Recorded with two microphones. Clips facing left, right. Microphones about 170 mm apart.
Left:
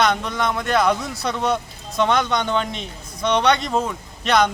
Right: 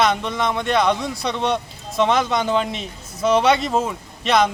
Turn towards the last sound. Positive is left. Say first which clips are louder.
# even
turn(degrees=0)  # may be behind; listen again after turning